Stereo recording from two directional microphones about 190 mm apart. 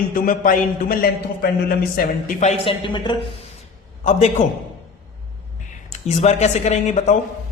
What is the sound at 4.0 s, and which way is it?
Speech, 40° left (ahead or behind).